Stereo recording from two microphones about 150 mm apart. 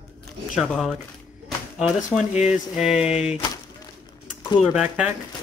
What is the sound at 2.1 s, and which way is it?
Speech, 10° left (ahead or behind).